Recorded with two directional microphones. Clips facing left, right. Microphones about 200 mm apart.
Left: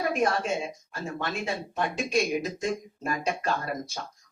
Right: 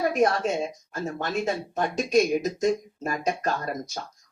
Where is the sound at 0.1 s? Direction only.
40° right (ahead or behind).